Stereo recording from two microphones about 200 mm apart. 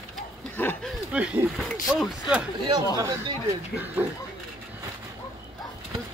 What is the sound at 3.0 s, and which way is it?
Speech, 20° right (ahead or behind).